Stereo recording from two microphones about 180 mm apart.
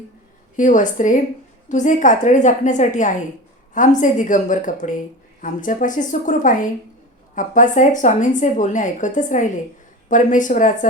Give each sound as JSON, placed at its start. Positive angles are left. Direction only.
{"t": 0.5, "sound": "a woman's voice", "side_deg": 45}